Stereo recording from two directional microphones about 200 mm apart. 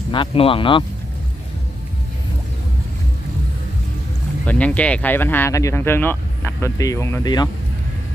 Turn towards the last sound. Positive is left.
turn(degrees=20)  # may be behind; listen again after turning